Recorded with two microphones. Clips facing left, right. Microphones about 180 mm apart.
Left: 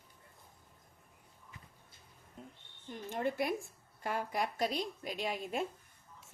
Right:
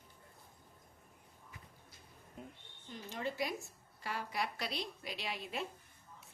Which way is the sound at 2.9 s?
55° left (ahead or behind).